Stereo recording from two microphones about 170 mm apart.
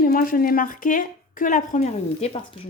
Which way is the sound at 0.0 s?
55° left (ahead or behind).